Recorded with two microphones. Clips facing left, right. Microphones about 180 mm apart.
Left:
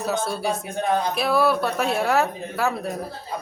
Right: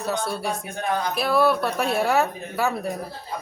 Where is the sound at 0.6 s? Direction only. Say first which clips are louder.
Left 3 dB; 25° left (ahead or behind).